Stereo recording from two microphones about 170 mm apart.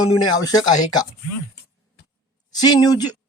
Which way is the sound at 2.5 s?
25° left (ahead or behind).